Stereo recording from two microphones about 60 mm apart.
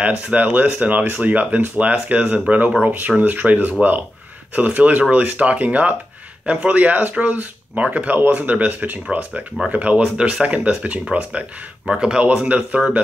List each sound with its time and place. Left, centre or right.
0.0 s speech: right
11.8 s speech: centre